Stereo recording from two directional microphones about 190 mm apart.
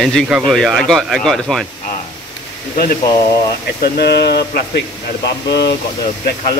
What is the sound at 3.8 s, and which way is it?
Speech, 60° left (ahead or behind).